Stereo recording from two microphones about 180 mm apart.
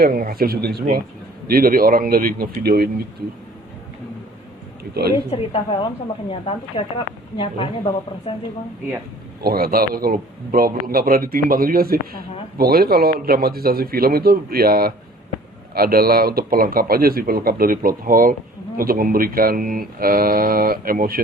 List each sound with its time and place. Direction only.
0.0 s a man's voice: 55° right (ahead or behind)
5.3 s a woman's voice: 30° left (ahead or behind)
9.4 s a man's voice: 55° right (ahead or behind)